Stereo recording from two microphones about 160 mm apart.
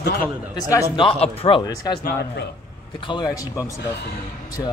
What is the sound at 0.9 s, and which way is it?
Speech, 35° left (ahead or behind).